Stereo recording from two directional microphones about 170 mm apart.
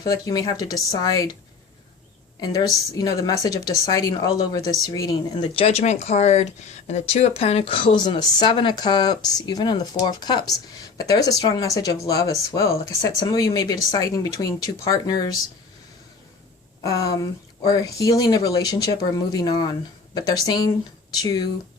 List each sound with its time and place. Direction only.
0.0 s speech: 20° left (ahead or behind)
2.4 s speech: 25° left (ahead or behind)
5.5 s speech: 35° left (ahead or behind)
16.8 s speech: 20° left (ahead or behind)